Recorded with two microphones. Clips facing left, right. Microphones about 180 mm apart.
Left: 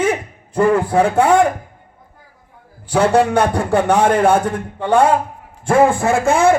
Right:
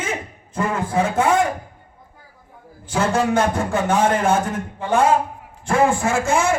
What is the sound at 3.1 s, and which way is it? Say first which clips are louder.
Speech: left 2 dB; 65° left (ahead or behind).